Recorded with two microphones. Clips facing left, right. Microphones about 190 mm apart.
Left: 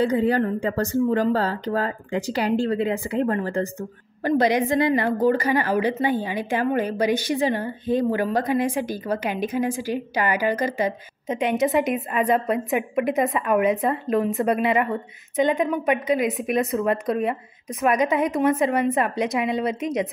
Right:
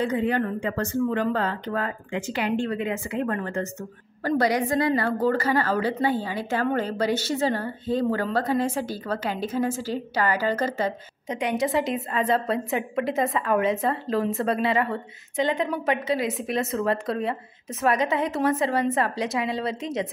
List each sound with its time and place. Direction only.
0.0 s speech: 35° left (ahead or behind)
4.2 s a woman's voice: 20° left (ahead or behind)